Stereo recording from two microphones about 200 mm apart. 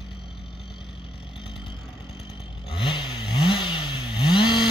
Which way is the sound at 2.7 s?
25° left (ahead or behind).